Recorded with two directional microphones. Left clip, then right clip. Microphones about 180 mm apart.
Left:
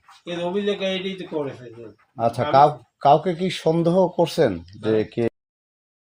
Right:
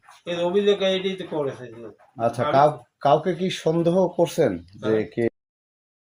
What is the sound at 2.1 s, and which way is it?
Speech, 35° left (ahead or behind).